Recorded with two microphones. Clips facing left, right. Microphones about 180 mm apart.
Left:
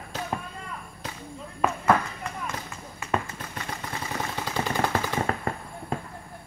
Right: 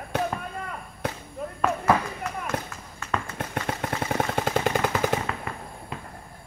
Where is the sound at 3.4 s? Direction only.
65° right (ahead or behind).